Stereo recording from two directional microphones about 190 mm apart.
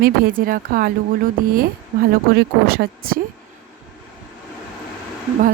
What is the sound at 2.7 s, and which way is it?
Speech, 50° right (ahead or behind).